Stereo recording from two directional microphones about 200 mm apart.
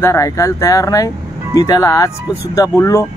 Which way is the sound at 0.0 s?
15° left (ahead or behind).